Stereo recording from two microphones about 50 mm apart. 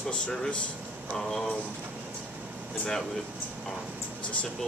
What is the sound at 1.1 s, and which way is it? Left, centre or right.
Speech, centre.